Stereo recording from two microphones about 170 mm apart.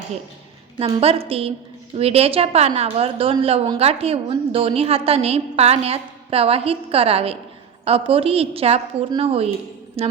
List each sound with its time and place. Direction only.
0.9 s a woman's voice: 35° right (ahead or behind)